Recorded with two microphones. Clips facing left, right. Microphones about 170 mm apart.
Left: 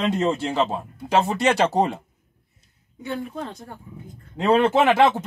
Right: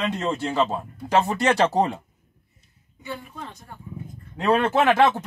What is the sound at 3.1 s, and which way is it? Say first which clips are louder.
Speech: left 6 dB; 65° left (ahead or behind).